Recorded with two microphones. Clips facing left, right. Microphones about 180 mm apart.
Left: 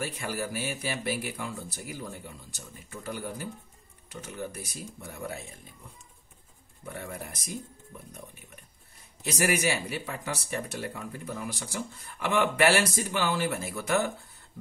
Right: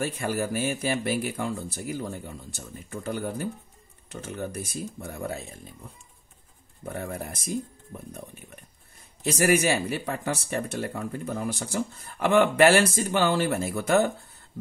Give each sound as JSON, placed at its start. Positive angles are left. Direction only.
{"t": 0.0, "sound": "speech", "side_deg": -50}
{"t": 6.8, "sound": "speech", "side_deg": -45}
{"t": 9.2, "sound": "speech", "side_deg": -50}